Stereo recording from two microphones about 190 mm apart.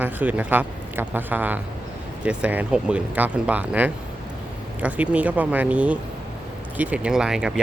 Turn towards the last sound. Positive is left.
turn(degrees=-5)  # may be behind; listen again after turning